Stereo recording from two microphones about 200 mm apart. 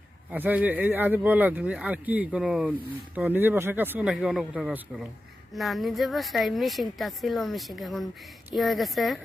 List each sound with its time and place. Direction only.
0.3 s a woman's voice: 10° right (ahead or behind)